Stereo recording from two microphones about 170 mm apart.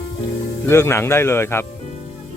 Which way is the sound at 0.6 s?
15° left (ahead or behind).